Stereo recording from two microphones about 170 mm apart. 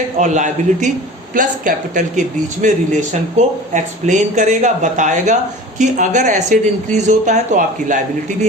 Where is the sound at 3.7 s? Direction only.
45° right (ahead or behind).